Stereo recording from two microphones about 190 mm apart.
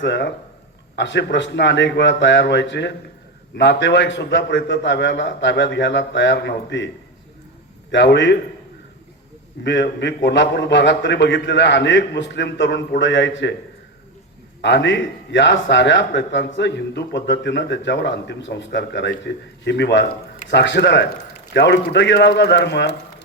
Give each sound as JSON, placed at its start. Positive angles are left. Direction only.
{"t": 0.0, "sound": "a man's voice", "side_deg": 65}
{"t": 7.9, "sound": "a man's voice", "side_deg": 65}
{"t": 9.6, "sound": "a man's voice", "side_deg": 65}
{"t": 14.6, "sound": "a man's voice", "side_deg": 65}